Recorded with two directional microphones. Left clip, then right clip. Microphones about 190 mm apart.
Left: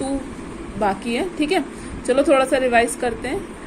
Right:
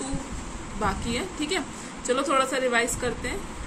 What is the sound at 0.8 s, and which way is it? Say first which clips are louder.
A woman's voice: left 7 dB; 15° left (ahead or behind).